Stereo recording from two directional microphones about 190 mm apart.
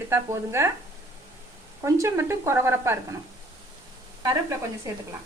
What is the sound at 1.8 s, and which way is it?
A woman's voice, 15° right (ahead or behind).